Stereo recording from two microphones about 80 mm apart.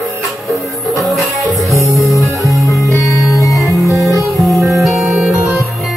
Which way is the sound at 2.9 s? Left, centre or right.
Left.